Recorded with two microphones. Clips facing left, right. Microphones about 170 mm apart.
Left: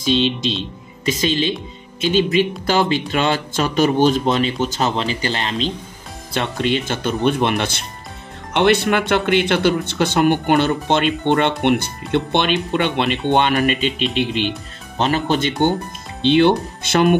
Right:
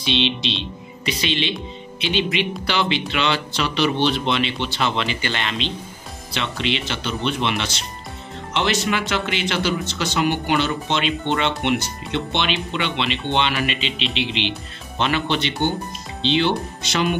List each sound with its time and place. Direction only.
0.0 s speech: 45° left (ahead or behind)
6.3 s speech: 50° left (ahead or behind)